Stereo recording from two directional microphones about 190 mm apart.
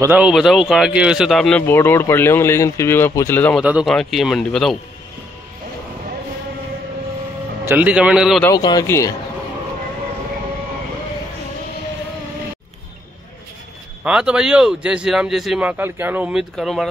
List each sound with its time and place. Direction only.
0.0 s speech: 10° right (ahead or behind); by 3.6 s 10° left (ahead or behind)
3.6 s speech: 5° right (ahead or behind)
7.6 s speech: 10° right (ahead or behind)
8.5 s speech: 20° left (ahead or behind)
14.0 s speech: 5° right (ahead or behind)